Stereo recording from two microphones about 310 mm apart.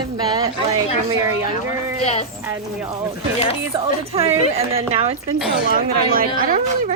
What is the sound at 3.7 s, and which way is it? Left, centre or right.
A woman's voice, centre.